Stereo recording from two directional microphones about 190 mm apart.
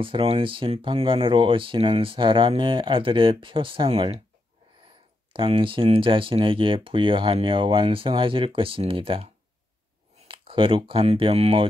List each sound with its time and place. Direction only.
0.0 s speech: 30° right (ahead or behind)
5.3 s speech: 25° right (ahead or behind)